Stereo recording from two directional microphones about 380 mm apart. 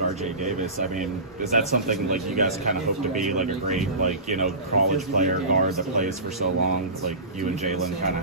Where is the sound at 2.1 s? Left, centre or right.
Centre.